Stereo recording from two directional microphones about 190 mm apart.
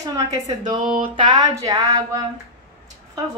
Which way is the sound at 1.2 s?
20° right (ahead or behind).